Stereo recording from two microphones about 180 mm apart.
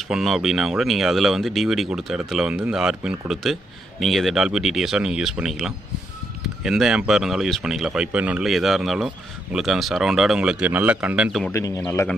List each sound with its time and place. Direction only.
0.1 s speech: centre (ahead or behind)
11.5 s speech: 15° left (ahead or behind)